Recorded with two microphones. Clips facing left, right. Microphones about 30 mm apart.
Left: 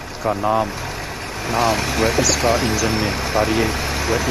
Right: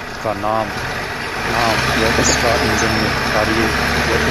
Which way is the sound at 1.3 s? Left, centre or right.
Right.